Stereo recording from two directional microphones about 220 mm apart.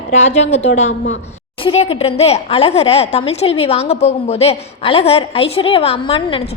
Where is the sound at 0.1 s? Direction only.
30° left (ahead or behind).